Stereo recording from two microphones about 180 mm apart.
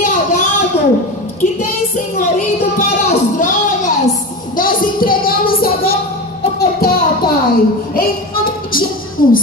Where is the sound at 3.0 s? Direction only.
45° left (ahead or behind).